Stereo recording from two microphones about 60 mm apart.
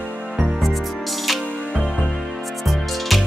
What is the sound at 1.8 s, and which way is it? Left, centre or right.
Music, centre.